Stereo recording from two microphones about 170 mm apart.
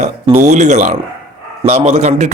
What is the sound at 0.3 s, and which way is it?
A man's voice, 45° right (ahead or behind).